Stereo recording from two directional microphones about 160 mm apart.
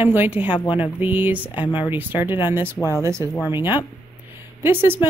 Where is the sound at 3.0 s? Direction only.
20° right (ahead or behind).